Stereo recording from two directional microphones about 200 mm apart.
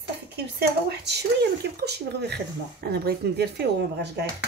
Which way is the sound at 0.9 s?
55° right (ahead or behind).